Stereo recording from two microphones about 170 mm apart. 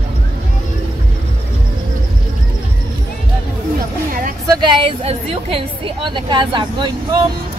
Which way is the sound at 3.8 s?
55° right (ahead or behind).